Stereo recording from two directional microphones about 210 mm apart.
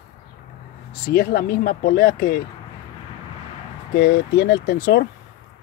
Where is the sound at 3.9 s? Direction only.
50° left (ahead or behind).